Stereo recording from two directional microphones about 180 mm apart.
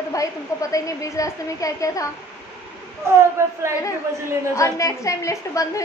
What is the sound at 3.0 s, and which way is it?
Speech, 15° right (ahead or behind).